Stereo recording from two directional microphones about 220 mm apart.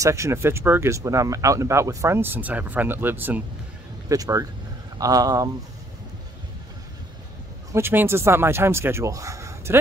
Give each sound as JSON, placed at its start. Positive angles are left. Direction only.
{"t": 0.0, "sound": "speech", "side_deg": -15}
{"t": 7.7, "sound": "speech", "side_deg": -10}